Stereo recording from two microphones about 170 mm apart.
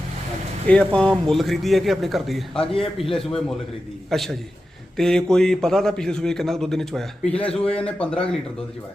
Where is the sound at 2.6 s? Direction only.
35° left (ahead or behind).